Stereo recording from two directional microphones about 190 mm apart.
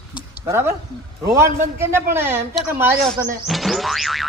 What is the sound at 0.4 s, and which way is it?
A man's voice, 15° right (ahead or behind).